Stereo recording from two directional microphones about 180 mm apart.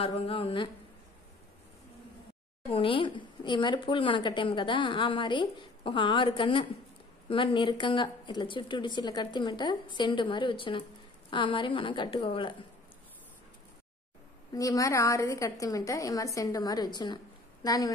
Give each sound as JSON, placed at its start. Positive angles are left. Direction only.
{"t": 0.0, "sound": "a woman's voice", "side_deg": 35}
{"t": 2.7, "sound": "speech", "side_deg": 30}
{"t": 14.5, "sound": "a woman's voice", "side_deg": 20}